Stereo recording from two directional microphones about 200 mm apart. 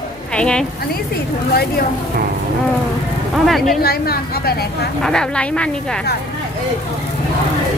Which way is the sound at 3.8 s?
50° left (ahead or behind).